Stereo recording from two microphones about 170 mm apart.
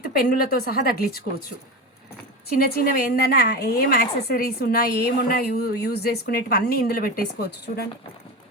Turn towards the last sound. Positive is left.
turn(degrees=70)  # may be behind; listen again after turning